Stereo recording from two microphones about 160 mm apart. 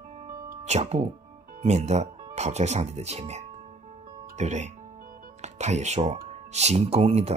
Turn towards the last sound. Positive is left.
turn(degrees=-40)  # may be behind; listen again after turning